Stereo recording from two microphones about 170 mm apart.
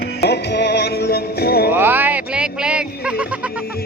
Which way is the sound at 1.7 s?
10° right (ahead or behind).